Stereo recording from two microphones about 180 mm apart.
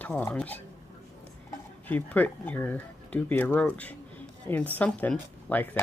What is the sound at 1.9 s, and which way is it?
Speech, 10° left (ahead or behind).